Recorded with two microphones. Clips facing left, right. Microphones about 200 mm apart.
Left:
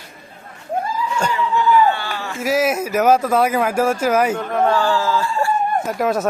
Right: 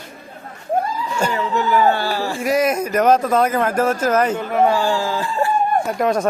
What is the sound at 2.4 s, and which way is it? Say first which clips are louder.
Speech: even; 5° left (ahead or behind).